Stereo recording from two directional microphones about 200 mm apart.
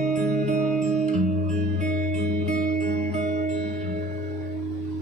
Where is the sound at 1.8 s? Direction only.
35° right (ahead or behind).